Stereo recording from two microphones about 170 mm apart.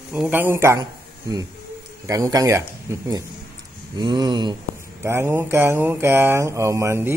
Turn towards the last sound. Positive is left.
turn(degrees=-15)  # may be behind; listen again after turning